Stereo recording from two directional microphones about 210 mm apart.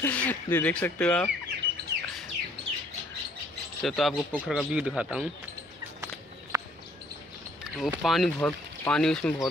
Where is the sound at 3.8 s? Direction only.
Centre (ahead or behind).